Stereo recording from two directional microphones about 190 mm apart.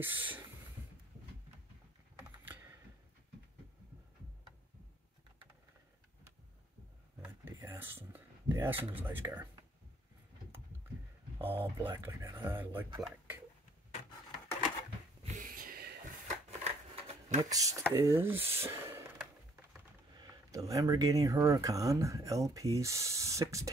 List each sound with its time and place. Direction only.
0.0 s speech: 10° right (ahead or behind)
2.2 s computer keyboard: 10° right (ahead or behind)
7.2 s a sound: 10° right (ahead or behind)
11.3 s speech: 10° right (ahead or behind)
15.2 s a sound: 45° right (ahead or behind)
16.4 s shuffling cards: 35° right (ahead or behind)
17.5 s speech: 20° right (ahead or behind)
17.9 s a sound: 15° right (ahead or behind)
20.2 s speech: 20° right (ahead or behind)